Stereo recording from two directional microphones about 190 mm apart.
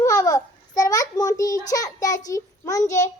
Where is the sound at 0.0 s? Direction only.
15° left (ahead or behind).